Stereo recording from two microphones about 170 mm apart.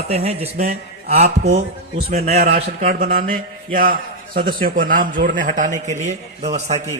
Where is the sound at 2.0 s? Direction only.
65° right (ahead or behind); by 6.8 s 40° right (ahead or behind).